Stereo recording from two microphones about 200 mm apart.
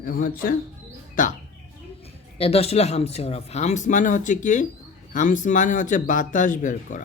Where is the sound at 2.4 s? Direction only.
30° left (ahead or behind).